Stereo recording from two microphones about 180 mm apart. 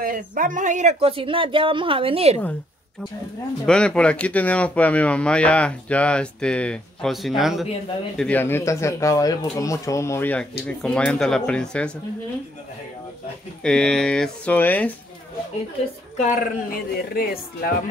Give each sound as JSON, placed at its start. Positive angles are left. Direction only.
{"t": 0.0, "sound": "speech", "side_deg": -50}
{"t": 3.6, "sound": "speech", "side_deg": 5}
{"t": 8.2, "sound": "speech", "side_deg": 10}
{"t": 13.6, "sound": "speech", "side_deg": 5}
{"t": 16.2, "sound": "speech", "side_deg": 40}
{"t": 17.1, "sound": "speech", "side_deg": 55}